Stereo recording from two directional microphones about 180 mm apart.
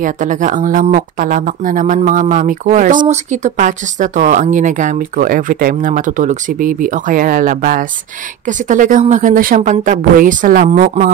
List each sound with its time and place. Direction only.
0.0 s speech: 45° right (ahead or behind)